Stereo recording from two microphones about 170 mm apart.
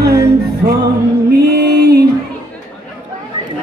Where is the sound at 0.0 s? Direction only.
70° right (ahead or behind).